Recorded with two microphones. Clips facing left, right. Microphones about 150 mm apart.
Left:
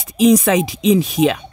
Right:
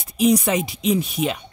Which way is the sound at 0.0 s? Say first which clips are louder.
Left 5 dB; 90° left.